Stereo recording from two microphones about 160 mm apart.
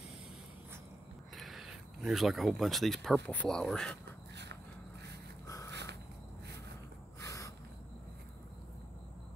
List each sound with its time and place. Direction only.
1.3 s a sound: centre (ahead or behind)
3.3 s speech: 5° left (ahead or behind)
5.7 s snort: 90° right
7.2 s snort: 20° left (ahead or behind)